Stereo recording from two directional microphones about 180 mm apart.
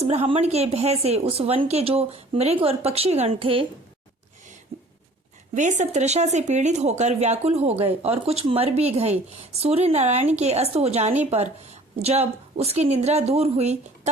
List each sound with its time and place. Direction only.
0.0 s a woman's voice: 35° right (ahead or behind)
4.7 s a sound: 35° right (ahead or behind)
5.5 s a woman's voice: 40° right (ahead or behind)